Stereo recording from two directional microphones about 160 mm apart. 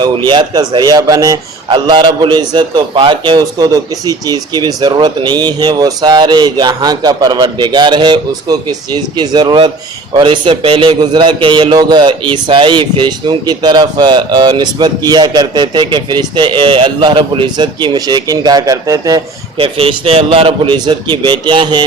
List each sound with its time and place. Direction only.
0.3 s a man's voice: 25° right (ahead or behind)
19.5 s a man's voice: 35° right (ahead or behind)